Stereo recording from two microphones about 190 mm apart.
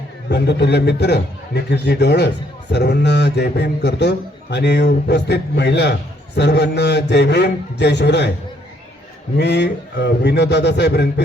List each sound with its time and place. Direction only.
0.3 s a man's voice: 60° left (ahead or behind)
9.4 s a man's voice: 60° left (ahead or behind)